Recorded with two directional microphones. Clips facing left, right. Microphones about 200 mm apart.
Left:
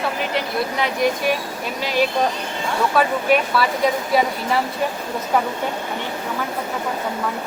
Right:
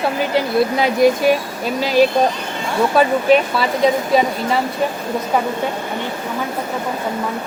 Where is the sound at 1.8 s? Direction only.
35° right (ahead or behind).